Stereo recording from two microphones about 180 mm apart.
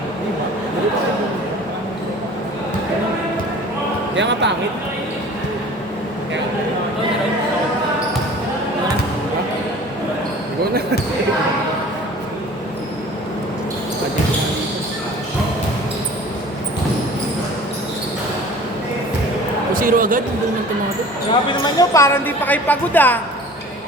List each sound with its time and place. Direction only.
4.1 s speech: 80° right
19.7 s basketball bounce: 50° right (ahead or behind)
21.6 s a woman's voice: 20° left (ahead or behind)